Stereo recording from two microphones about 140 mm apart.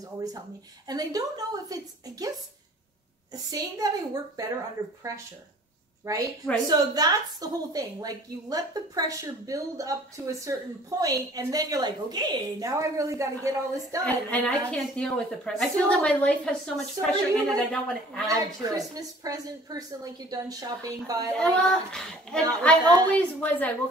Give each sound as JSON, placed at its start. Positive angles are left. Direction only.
{"t": 0.0, "sound": "a woman's voice", "side_deg": -25}
{"t": 6.0, "sound": "a woman's voice", "side_deg": -25}
{"t": 14.0, "sound": "a woman's voice", "side_deg": 10}
{"t": 18.2, "sound": "a woman's voice", "side_deg": -25}
{"t": 21.4, "sound": "a child's voice", "side_deg": 5}